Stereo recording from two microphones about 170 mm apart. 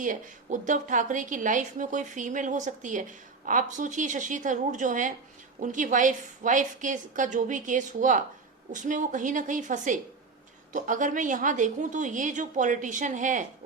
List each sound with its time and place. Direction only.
0.0 s a woman's voice: 50° right (ahead or behind)